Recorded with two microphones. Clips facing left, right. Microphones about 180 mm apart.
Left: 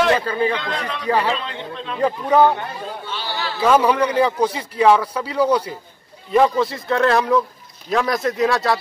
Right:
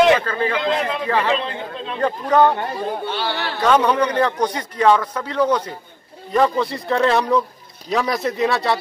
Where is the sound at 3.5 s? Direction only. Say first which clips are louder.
Left 1 dB; 5° left (ahead or behind).